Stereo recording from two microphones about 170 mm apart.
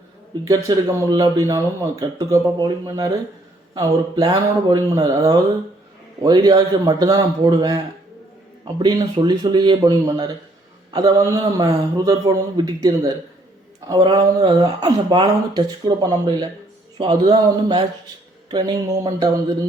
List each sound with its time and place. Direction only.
0.4 s speech: 20° right (ahead or behind)